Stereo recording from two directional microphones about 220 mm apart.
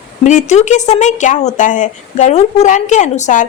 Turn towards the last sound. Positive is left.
turn(degrees=35)  # may be behind; listen again after turning